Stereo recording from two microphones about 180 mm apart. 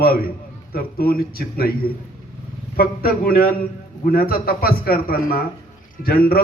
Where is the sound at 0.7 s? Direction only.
55° left (ahead or behind).